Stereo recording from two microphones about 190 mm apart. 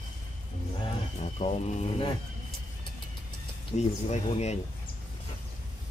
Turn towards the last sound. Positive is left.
turn(degrees=35)  # may be behind; listen again after turning